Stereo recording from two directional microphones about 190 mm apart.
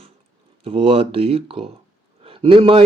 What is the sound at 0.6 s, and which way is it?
A man's voice, 30° right (ahead or behind).